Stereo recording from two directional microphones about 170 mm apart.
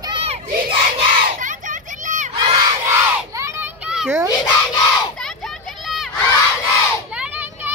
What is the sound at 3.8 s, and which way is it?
Children playing, 5° right (ahead or behind).